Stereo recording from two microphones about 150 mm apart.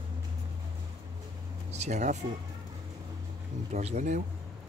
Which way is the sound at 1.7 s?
50° right (ahead or behind).